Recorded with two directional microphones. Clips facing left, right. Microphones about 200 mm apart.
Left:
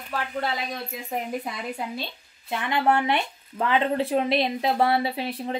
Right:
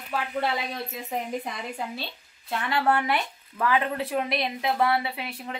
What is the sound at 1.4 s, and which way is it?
Speech, 10° left (ahead or behind).